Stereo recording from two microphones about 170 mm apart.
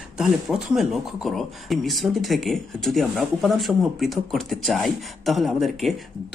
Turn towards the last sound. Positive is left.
turn(degrees=0)  # may be behind; listen again after turning